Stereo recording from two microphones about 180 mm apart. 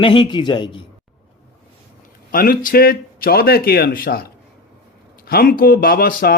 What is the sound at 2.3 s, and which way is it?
Speech, 55° left (ahead or behind).